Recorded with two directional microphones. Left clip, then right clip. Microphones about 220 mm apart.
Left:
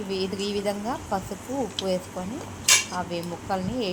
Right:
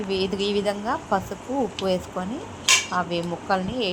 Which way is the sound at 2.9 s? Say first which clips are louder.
Right 5 dB; 15° right (ahead or behind).